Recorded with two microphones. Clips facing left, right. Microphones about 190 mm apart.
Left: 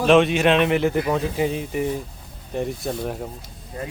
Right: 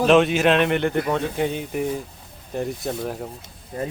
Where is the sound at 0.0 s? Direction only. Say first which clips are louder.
Even; centre (ahead or behind).